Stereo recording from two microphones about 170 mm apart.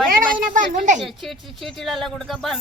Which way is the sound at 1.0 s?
Centre (ahead or behind).